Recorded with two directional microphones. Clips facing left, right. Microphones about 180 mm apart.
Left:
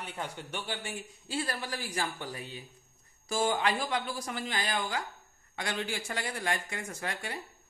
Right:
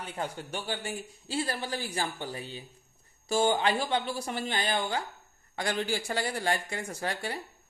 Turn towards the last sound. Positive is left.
turn(degrees=-35)  # may be behind; listen again after turning